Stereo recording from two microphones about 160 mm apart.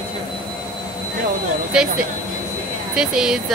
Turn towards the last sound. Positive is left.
turn(degrees=-5)  # may be behind; listen again after turning